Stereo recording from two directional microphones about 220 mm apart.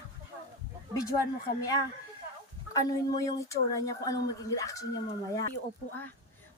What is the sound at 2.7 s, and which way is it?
Speech, 15° left (ahead or behind).